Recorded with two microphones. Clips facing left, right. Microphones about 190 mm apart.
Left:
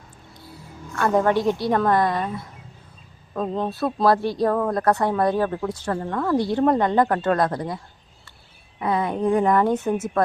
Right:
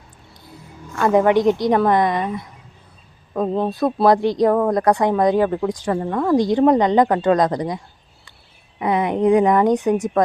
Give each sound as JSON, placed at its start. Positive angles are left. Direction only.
{"t": 0.9, "sound": "speech", "side_deg": -15}
{"t": 3.3, "sound": "speech", "side_deg": -15}
{"t": 8.8, "sound": "speech", "side_deg": -20}